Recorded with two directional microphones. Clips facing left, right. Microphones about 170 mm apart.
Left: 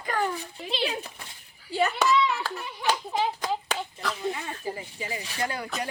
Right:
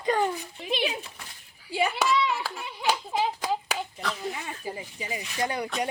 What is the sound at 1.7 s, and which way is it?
Hands, 10° right (ahead or behind).